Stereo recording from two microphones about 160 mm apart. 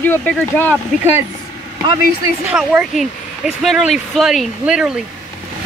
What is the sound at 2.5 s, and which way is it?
Speech, 5° right (ahead or behind).